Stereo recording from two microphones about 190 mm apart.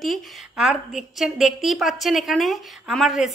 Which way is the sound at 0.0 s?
Centre (ahead or behind).